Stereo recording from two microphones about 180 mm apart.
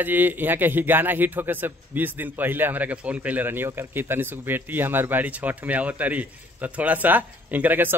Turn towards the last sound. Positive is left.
turn(degrees=-10)  # may be behind; listen again after turning